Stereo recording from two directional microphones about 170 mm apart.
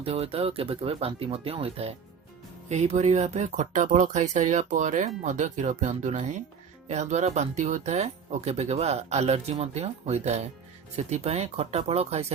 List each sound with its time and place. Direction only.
0.0 s speech: 35° right (ahead or behind)